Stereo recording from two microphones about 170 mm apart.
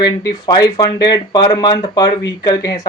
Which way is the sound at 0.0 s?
25° left (ahead or behind).